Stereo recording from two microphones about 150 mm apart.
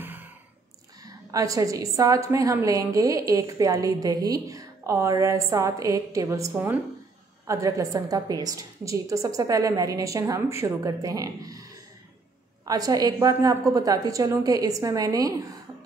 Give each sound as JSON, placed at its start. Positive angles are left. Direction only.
{"t": 1.0, "sound": "a woman's voice", "side_deg": -25}